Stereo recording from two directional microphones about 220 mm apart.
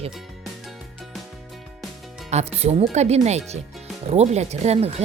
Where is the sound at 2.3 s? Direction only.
30° right (ahead or behind).